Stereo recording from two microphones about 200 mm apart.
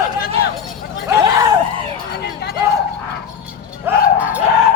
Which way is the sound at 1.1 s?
15° right (ahead or behind).